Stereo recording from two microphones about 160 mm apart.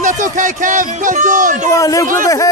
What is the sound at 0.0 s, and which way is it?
Music, 55° right (ahead or behind).